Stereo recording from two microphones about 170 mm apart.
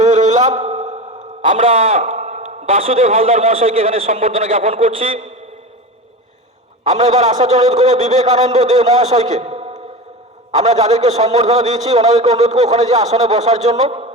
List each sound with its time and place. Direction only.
0.0 s a sound: 45° right (ahead or behind)
1.6 s a man's voice: 35° right (ahead or behind)
6.9 s a man's voice: 45° right (ahead or behind)